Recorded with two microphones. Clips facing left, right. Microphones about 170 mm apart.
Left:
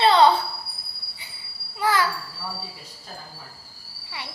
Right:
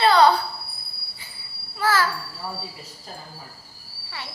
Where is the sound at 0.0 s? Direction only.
25° left (ahead or behind).